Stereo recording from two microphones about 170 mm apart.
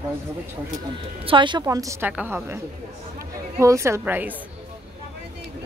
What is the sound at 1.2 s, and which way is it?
A woman's voice, 30° right (ahead or behind).